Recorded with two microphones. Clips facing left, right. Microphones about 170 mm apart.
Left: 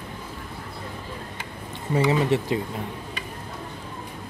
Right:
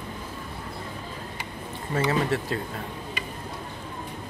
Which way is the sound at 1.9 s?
15° left (ahead or behind).